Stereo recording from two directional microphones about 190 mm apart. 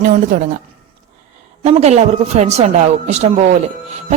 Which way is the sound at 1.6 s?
35° right (ahead or behind).